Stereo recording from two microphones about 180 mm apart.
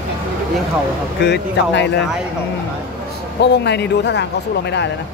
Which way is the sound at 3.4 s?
70° left (ahead or behind).